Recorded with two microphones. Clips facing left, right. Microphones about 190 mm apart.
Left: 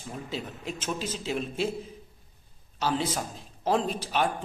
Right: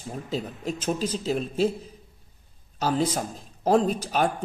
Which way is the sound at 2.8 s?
40° right (ahead or behind).